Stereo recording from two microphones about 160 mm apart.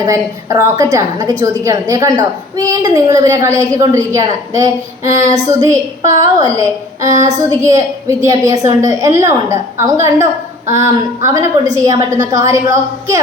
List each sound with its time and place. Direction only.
0.0 s a woman's voice: 20° right (ahead or behind)
7.1 s speech: 50° right (ahead or behind)
7.6 s a woman's voice: 20° right (ahead or behind)